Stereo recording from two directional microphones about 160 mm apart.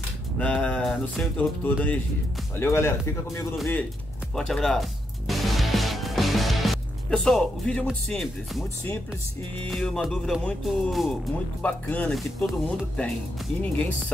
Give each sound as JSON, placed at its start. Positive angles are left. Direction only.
{"t": 0.4, "sound": "speech", "side_deg": 5}
{"t": 4.4, "sound": "music", "side_deg": 5}
{"t": 9.7, "sound": "speech", "side_deg": 5}